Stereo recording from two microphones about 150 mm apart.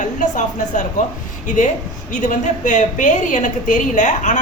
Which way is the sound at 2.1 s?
55° left (ahead or behind).